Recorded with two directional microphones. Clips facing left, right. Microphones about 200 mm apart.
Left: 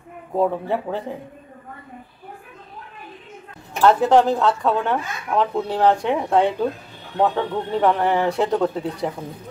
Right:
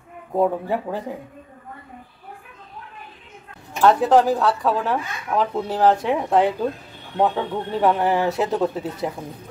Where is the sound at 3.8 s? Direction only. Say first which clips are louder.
Left 1 dB; centre (ahead or behind).